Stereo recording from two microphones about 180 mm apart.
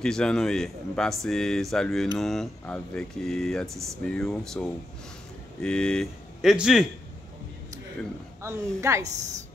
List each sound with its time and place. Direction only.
0.0 s speech: 5° left (ahead or behind)
8.4 s speech: 15° right (ahead or behind)